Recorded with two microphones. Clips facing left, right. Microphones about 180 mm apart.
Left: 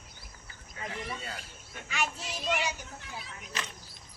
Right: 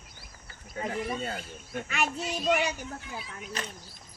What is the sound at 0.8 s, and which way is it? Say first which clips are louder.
Speech: right 7 dB; 45° right (ahead or behind).